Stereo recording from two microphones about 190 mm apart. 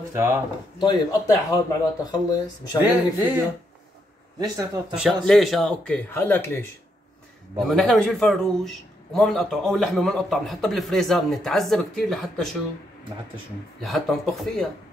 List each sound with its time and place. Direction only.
0.1 s speech: 15° right (ahead or behind)
0.7 s speech: 25° left (ahead or behind)
2.8 s speech: 10° right (ahead or behind)
4.9 s a man's voice: centre (ahead or behind)
7.6 s a man's voice: centre (ahead or behind)
13.7 s a man's voice: centre (ahead or behind)